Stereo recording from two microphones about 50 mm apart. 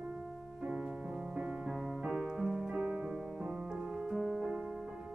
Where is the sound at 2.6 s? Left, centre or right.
Centre.